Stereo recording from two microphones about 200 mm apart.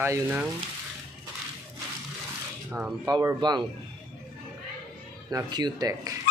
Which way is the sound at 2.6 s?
5° right (ahead or behind).